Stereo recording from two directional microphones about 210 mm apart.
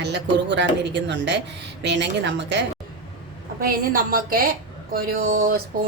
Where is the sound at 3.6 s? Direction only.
45° right (ahead or behind).